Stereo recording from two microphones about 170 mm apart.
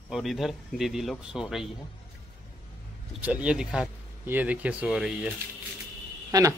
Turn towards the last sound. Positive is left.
turn(degrees=-20)  # may be behind; listen again after turning